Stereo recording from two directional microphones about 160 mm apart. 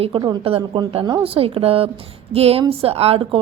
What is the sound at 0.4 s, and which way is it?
A woman's voice, 35° right (ahead or behind).